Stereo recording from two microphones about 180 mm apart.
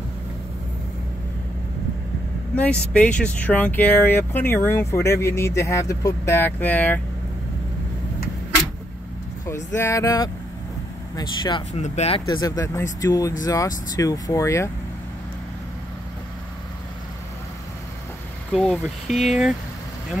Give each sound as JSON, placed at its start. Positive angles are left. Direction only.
{"t": 2.5, "sound": "speech", "side_deg": 5}
{"t": 9.7, "sound": "speech", "side_deg": 15}
{"t": 11.7, "sound": "speech", "side_deg": 40}
{"t": 12.3, "sound": "speech", "side_deg": 20}
{"t": 18.5, "sound": "speech", "side_deg": 5}